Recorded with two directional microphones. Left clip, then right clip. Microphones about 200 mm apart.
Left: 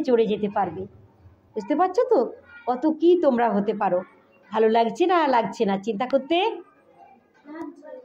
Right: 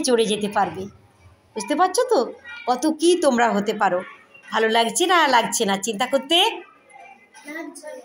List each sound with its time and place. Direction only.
0.0 s a woman's voice: 5° right (ahead or behind)
4.5 s a woman's voice: 5° left (ahead or behind)